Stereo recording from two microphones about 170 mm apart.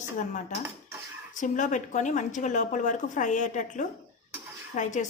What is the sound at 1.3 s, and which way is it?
A woman's voice, 45° left (ahead or behind).